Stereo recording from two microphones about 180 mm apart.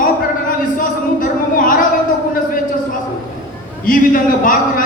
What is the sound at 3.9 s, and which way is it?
Speech, 50° left (ahead or behind).